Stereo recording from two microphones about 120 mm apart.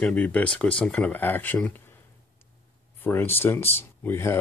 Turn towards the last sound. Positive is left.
turn(degrees=20)  # may be behind; listen again after turning